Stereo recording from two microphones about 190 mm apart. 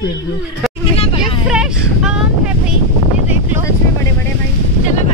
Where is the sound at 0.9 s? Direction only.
30° left (ahead or behind).